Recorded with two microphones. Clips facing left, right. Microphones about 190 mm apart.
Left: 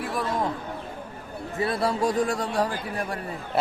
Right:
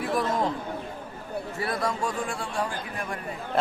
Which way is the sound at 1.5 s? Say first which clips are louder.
Left 5 dB; 25° left (ahead or behind).